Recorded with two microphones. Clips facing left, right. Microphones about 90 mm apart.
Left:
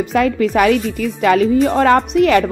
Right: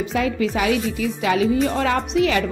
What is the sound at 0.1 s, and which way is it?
Speech, 55° left (ahead or behind).